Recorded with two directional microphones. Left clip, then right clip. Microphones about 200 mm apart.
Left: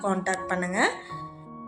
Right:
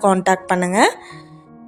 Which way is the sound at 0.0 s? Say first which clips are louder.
Right 12 dB; 45° right (ahead or behind).